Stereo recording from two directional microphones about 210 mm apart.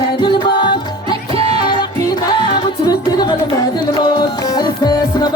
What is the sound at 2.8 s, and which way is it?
Music, 20° left (ahead or behind).